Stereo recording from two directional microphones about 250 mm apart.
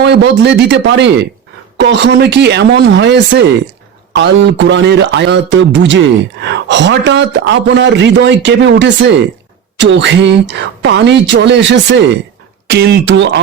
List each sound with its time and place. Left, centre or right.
0.0 s a man's voice: right